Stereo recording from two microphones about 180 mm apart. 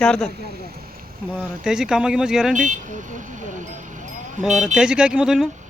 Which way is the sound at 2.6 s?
45° right (ahead or behind).